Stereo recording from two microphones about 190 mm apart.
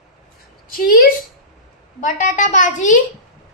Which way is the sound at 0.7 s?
50° left (ahead or behind).